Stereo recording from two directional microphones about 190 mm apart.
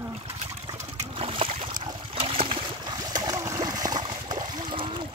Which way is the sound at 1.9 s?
30° right (ahead or behind).